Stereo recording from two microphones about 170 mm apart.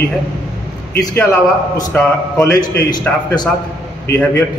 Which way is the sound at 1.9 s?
15° left (ahead or behind).